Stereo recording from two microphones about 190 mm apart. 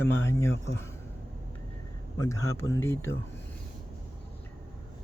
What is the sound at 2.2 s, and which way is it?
Speech, 15° left (ahead or behind).